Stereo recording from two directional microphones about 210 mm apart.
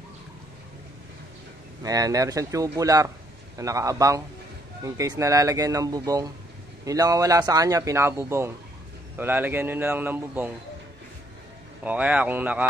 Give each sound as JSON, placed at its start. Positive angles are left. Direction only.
{"t": 1.8, "sound": "a man's voice", "side_deg": -15}
{"t": 11.8, "sound": "a man's voice", "side_deg": -5}